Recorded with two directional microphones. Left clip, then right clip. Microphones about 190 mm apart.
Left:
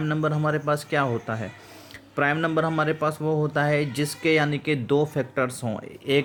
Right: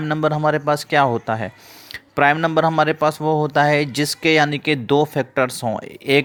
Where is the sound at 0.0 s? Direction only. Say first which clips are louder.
Right 7 dB; 40° right (ahead or behind).